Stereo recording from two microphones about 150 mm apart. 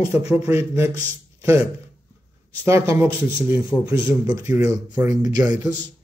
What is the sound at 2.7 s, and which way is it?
A man's voice, 20° right (ahead or behind).